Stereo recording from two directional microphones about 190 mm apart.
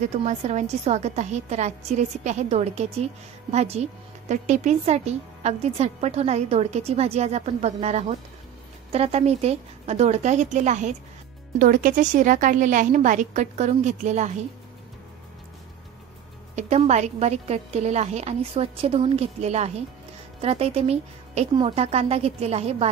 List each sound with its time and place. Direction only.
0.2 s speech: 35° right (ahead or behind)
16.5 s speech: 35° right (ahead or behind)